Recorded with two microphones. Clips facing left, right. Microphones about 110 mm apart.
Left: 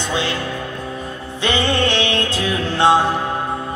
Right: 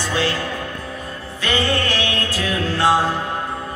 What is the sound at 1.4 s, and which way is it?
Music, 20° left (ahead or behind).